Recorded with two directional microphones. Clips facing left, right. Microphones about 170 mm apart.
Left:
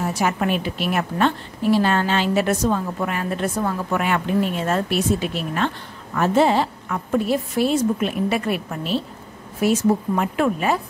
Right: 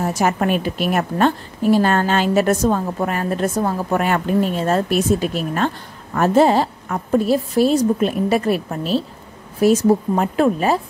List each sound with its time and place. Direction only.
0.0 s a woman's voice: 40° right (ahead or behind)